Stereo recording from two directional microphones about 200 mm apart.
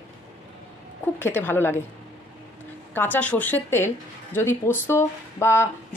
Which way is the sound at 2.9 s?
10° left (ahead or behind).